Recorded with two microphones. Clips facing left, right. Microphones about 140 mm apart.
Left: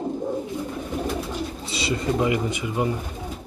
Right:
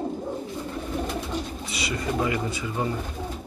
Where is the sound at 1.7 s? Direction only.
25° left (ahead or behind).